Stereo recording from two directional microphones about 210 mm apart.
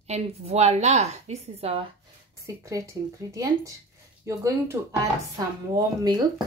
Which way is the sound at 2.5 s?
15° right (ahead or behind).